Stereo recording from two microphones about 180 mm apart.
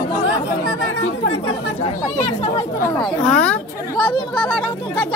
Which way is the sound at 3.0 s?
5° left (ahead or behind).